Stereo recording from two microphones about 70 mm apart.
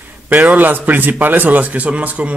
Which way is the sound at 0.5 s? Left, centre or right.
Right.